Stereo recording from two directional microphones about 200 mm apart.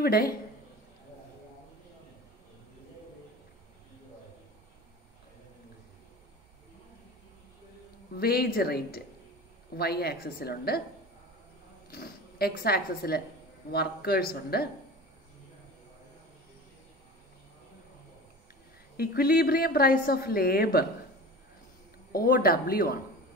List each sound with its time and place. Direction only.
0.0 s a woman's voice: 50° left (ahead or behind)
8.2 s a woman's voice: 50° left (ahead or behind)
11.9 s a woman's voice: 50° left (ahead or behind)
18.9 s a woman's voice: 50° left (ahead or behind)
22.1 s a woman's voice: 45° left (ahead or behind)